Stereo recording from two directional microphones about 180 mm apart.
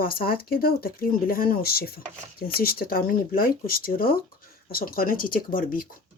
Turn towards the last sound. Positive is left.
turn(degrees=50)  # may be behind; listen again after turning